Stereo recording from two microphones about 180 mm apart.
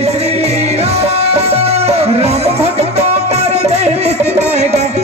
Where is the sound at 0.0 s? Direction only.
35° right (ahead or behind).